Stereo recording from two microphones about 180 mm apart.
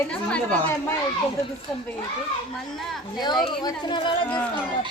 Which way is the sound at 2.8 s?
Centre (ahead or behind).